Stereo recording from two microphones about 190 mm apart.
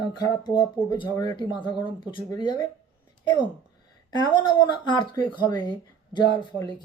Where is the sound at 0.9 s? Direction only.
25° left (ahead or behind).